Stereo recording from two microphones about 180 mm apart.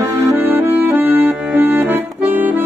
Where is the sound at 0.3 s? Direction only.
10° right (ahead or behind).